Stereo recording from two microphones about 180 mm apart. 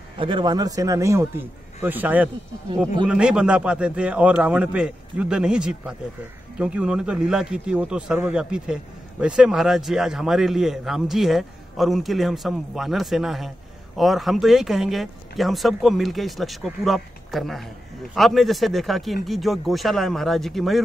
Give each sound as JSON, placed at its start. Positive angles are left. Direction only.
{"t": 0.2, "sound": "a man's voice", "side_deg": -25}